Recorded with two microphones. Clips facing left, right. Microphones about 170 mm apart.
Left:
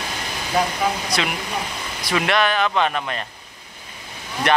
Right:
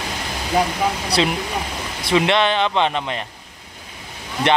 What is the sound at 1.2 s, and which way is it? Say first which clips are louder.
Speech: right 4 dB; 30° right (ahead or behind).